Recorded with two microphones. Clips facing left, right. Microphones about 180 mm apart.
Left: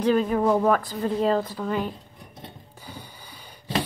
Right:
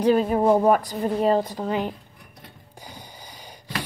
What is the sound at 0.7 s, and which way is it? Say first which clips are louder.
Speech: right 2 dB; 15° right (ahead or behind).